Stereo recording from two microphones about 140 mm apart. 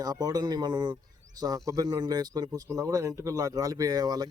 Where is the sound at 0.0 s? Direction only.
25° right (ahead or behind).